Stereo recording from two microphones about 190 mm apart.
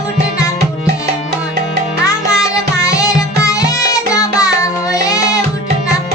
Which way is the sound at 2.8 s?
15° left (ahead or behind).